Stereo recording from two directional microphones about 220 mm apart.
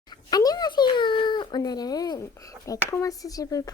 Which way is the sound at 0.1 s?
20° left (ahead or behind).